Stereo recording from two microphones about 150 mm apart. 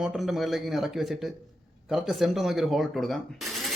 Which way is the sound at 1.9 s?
Centre (ahead or behind).